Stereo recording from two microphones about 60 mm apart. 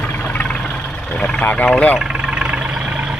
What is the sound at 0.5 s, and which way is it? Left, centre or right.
Vehicle, centre.